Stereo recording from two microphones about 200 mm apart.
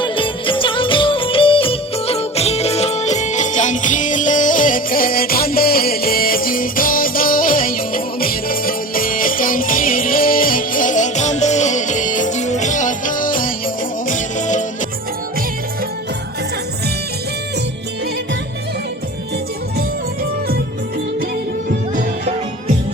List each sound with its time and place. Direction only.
0.0 s music: 25° left (ahead or behind)